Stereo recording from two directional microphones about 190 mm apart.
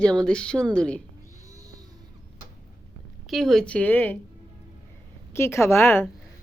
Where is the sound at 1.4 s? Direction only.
15° right (ahead or behind).